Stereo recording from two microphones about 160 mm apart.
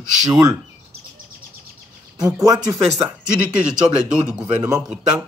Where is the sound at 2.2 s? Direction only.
25° right (ahead or behind).